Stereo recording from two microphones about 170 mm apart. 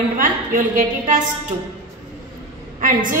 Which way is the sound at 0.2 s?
55° right (ahead or behind).